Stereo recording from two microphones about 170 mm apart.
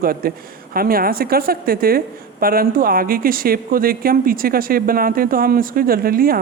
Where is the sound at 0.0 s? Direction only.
60° right (ahead or behind).